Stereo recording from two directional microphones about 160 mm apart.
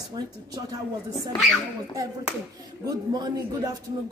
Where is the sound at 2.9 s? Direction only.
20° right (ahead or behind).